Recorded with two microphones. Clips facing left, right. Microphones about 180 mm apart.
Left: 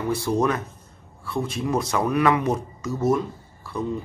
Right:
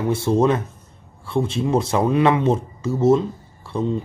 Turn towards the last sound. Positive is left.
turn(degrees=-25)  # may be behind; listen again after turning